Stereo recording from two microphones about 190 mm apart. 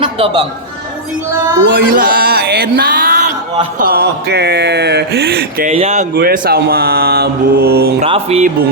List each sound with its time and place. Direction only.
0.0 s music: 25° right (ahead or behind)
1.7 s music: 50° right (ahead or behind)
3.8 s a sound: 50° right (ahead or behind)
5.6 s music: 35° right (ahead or behind)
6.1 s a sound: 55° right (ahead or behind)
8.0 s music: 30° right (ahead or behind)